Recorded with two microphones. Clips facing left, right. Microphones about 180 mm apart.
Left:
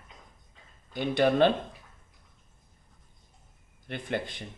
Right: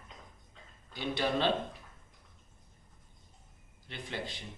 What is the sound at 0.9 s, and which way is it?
Speech, 50° left (ahead or behind).